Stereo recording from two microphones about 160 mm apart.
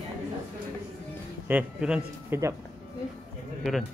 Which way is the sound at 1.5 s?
10° right (ahead or behind).